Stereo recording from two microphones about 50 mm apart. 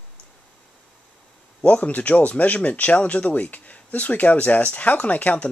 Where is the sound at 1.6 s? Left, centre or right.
Left.